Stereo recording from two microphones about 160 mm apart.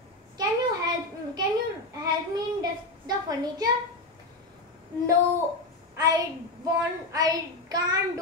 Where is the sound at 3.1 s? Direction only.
25° right (ahead or behind).